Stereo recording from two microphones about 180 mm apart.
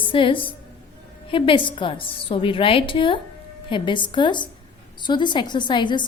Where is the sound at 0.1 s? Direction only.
30° left (ahead or behind).